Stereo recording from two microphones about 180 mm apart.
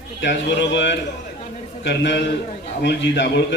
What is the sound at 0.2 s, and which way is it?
A man's voice, 80° left.